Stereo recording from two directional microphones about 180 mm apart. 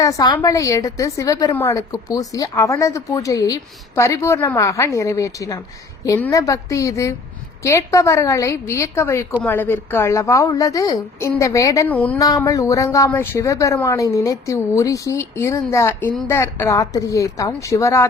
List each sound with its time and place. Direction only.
0.0 s a woman's voice: 20° left (ahead or behind)
11.9 s speech: 10° left (ahead or behind)